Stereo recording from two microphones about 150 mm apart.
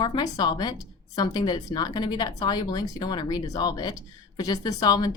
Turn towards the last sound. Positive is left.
turn(degrees=30)  # may be behind; listen again after turning